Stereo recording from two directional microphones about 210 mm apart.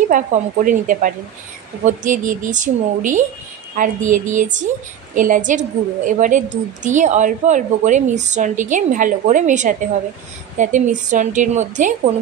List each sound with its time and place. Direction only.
0.1 s a woman's voice: 40° right (ahead or behind)